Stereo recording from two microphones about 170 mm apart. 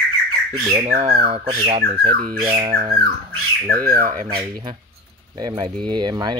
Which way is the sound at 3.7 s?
55° right (ahead or behind).